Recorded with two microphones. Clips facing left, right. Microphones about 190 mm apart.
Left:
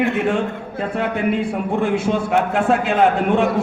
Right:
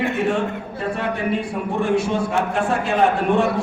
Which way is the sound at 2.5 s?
60° left (ahead or behind).